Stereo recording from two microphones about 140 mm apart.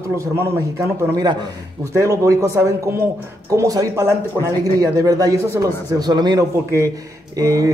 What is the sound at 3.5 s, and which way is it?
Speech, 25° right (ahead or behind).